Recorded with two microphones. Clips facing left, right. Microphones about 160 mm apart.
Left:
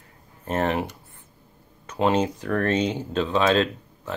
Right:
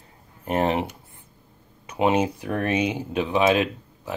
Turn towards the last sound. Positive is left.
turn(degrees=-10)  # may be behind; listen again after turning